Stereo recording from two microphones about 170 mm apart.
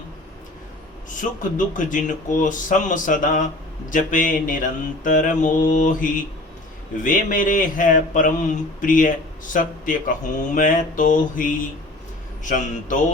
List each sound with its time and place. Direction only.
1.5 s speech: 50° left (ahead or behind)